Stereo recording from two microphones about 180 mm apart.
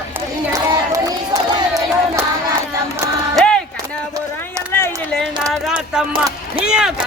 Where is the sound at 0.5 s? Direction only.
20° right (ahead or behind).